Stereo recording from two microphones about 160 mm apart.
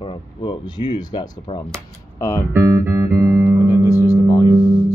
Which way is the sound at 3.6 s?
20° left (ahead or behind).